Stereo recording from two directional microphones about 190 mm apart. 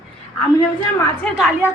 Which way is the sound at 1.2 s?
Centre (ahead or behind).